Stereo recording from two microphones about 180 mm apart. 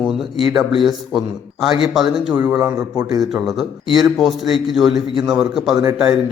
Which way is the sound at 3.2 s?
Centre (ahead or behind).